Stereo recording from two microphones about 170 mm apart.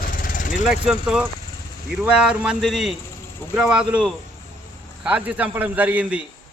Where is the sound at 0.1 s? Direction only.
55° left (ahead or behind).